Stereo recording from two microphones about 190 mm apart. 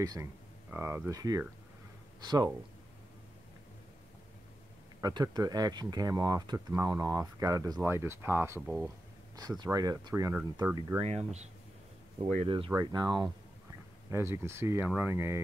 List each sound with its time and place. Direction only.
0.0 s speech: 20° right (ahead or behind)
5.0 s speech: 20° right (ahead or behind)
9.4 s speech: 20° right (ahead or behind)
11.0 s speech: 35° right (ahead or behind); by 15.4 s 15° right (ahead or behind)